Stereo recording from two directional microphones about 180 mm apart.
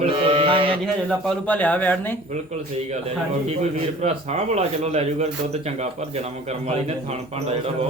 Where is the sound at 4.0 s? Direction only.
35° right (ahead or behind).